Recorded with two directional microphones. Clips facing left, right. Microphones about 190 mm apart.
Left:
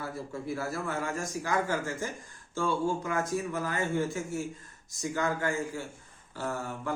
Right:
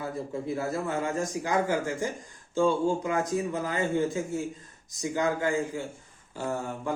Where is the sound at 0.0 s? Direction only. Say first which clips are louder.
Right 4 dB; 20° right (ahead or behind).